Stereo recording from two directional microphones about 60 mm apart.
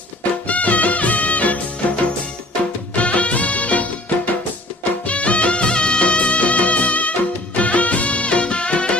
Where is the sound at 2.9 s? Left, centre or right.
Left.